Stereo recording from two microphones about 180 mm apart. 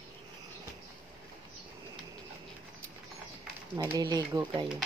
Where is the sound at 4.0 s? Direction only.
25° right (ahead or behind).